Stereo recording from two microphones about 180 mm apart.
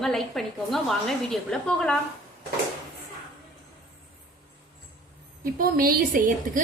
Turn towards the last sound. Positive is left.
turn(degrees=-50)  # may be behind; listen again after turning